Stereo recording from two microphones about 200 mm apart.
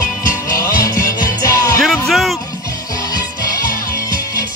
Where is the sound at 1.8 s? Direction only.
Centre (ahead or behind).